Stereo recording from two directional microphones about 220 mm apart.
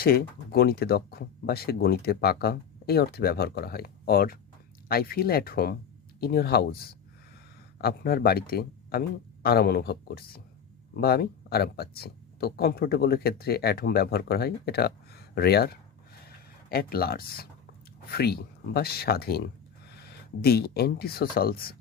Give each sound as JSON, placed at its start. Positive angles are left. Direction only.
{"t": 0.0, "sound": "speech", "side_deg": 45}